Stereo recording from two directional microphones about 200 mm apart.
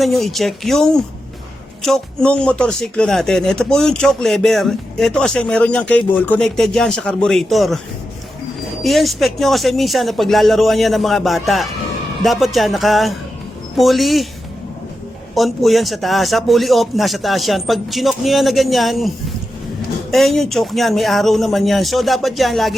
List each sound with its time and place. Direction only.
0.0 s speech: centre (ahead or behind)
8.8 s speech: centre (ahead or behind)
15.4 s speech: centre (ahead or behind)